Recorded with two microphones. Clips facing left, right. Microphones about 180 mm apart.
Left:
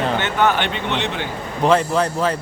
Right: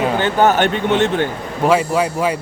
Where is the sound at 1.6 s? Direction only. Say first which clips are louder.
Right 1 dB; 10° right (ahead or behind).